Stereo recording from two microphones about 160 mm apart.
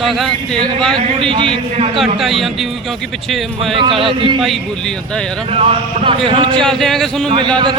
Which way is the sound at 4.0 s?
30° right (ahead or behind).